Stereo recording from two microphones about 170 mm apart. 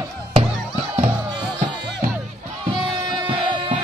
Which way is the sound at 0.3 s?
35° right (ahead or behind).